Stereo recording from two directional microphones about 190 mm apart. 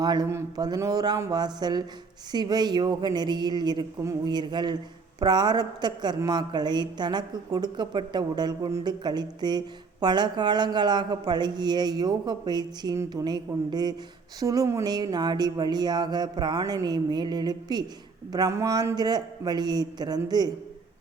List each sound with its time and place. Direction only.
0.0 s a woman's voice: 20° right (ahead or behind)